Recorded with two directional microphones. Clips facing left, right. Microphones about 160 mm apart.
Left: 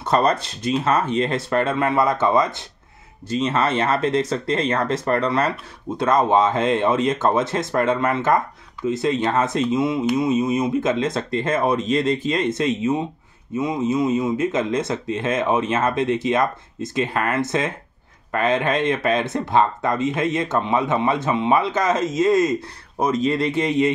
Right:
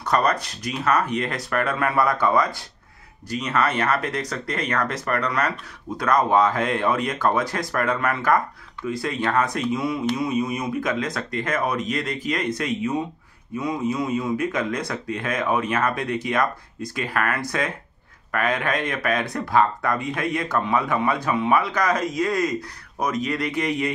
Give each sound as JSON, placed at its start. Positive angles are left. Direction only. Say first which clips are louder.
{"t": 0.0, "sound": "speech", "louder": "left 3 dB", "side_deg": 25}